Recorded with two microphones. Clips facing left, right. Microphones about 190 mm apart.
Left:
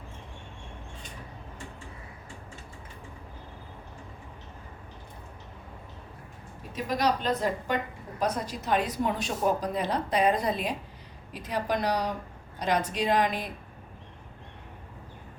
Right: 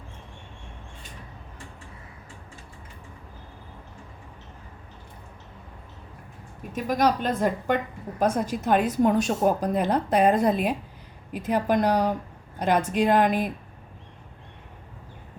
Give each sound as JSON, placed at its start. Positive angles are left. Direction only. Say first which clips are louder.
{"t": 6.7, "sound": "a woman's voice", "louder": "right 4 dB", "side_deg": -50}